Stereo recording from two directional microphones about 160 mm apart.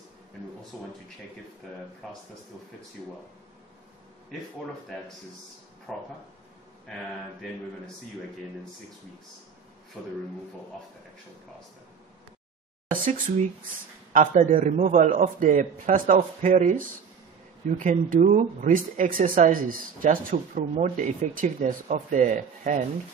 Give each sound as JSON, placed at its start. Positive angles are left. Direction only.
{"t": 0.7, "sound": "speech", "side_deg": 0}
{"t": 2.0, "sound": "speech", "side_deg": 0}
{"t": 5.9, "sound": "speech", "side_deg": 0}
{"t": 12.9, "sound": "speech", "side_deg": -60}